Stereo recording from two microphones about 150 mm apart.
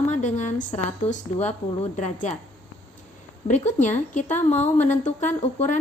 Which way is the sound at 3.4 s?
55° left (ahead or behind).